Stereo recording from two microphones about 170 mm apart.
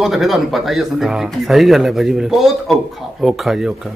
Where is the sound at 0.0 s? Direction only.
Centre (ahead or behind).